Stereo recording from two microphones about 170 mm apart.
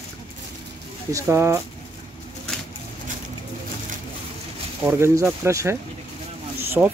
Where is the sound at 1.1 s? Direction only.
15° right (ahead or behind).